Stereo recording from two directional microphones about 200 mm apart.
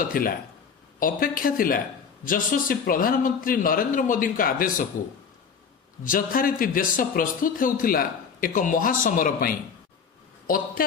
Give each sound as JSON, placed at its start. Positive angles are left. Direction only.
{"t": 0.0, "sound": "a man's voice", "side_deg": 45}
{"t": 6.0, "sound": "a man's voice", "side_deg": 45}